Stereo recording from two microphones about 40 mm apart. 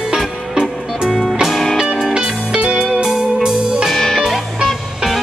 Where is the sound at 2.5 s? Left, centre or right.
Right.